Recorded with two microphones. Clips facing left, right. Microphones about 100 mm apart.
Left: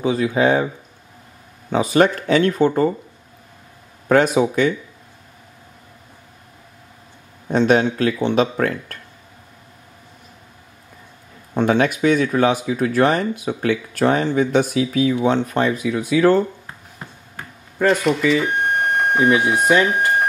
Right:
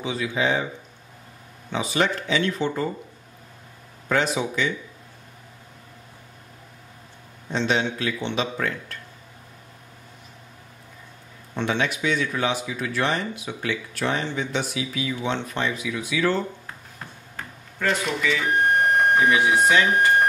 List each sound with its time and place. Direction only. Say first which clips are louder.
0.0 s speech: left 8 dB; 45° left (ahead or behind)
1.7 s speech: left 8 dB; 45° left (ahead or behind)
4.1 s speech: left 8 dB; 50° left (ahead or behind)
7.4 s speech: left 8 dB; 50° left (ahead or behind)
11.5 s speech: left 8 dB; 45° left (ahead or behind)
16.6 s a sound: left 2 dB; 10° left (ahead or behind)
18.4 s a sound: even; centre (ahead or behind)
19.4 s speech: left 2 dB; 5° left (ahead or behind)